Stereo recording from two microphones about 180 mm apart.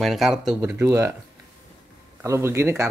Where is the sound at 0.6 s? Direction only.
15° right (ahead or behind).